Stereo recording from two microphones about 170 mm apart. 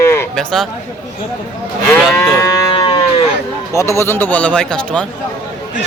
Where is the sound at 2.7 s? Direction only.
30° left (ahead or behind).